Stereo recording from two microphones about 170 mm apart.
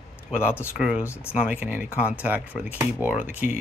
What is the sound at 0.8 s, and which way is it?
Speech, 5° right (ahead or behind).